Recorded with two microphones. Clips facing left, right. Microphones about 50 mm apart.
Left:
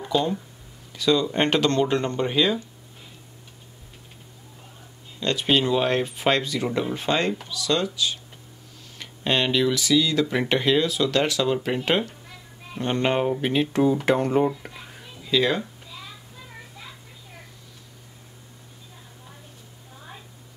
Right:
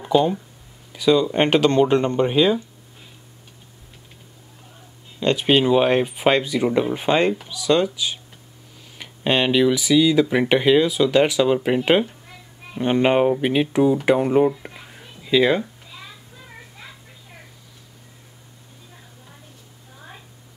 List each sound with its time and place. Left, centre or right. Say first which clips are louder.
0.0 s speech: right 6 dB; centre
5.2 s speech: right 4 dB; centre